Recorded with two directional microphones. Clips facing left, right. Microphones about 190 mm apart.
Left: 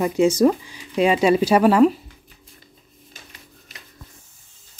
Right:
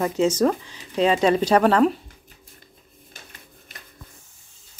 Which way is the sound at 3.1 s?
50° right (ahead or behind).